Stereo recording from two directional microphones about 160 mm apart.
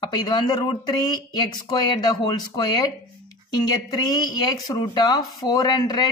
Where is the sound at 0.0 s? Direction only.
30° left (ahead or behind).